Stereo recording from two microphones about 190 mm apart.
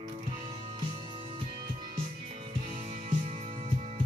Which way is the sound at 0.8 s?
30° right (ahead or behind).